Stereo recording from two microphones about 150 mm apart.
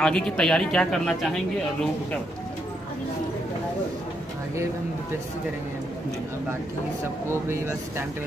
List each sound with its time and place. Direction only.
0.0 s speech: 5° left (ahead or behind)
7.2 s speech: 15° right (ahead or behind)